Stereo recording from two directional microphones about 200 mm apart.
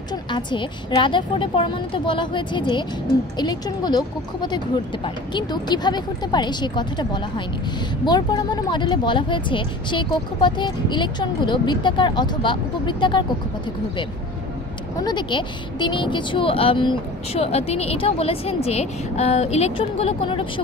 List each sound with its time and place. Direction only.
0.1 s speech: 25° left (ahead or behind)
15.0 s speech: 25° left (ahead or behind)